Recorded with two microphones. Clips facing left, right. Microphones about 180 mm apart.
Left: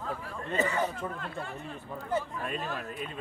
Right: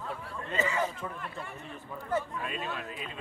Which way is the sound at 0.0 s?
55° left (ahead or behind).